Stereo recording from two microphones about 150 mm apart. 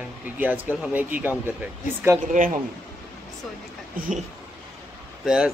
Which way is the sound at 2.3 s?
60° right (ahead or behind).